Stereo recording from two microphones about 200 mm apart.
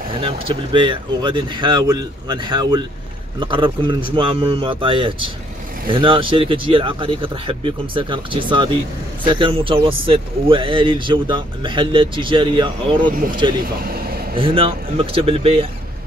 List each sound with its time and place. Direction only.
0.1 s speech: 25° right (ahead or behind)
13.1 s speech: 45° right (ahead or behind)
13.6 s vehicle: 50° right (ahead or behind)
14.3 s speech: 25° right (ahead or behind)